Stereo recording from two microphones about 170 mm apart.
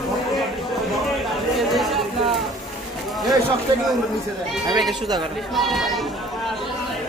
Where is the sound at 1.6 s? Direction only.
Centre (ahead or behind).